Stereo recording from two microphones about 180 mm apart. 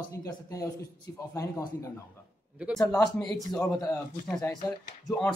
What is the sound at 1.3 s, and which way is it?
Speech, 20° left (ahead or behind).